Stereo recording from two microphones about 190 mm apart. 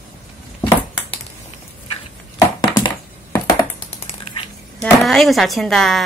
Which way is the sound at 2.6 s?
20° left (ahead or behind).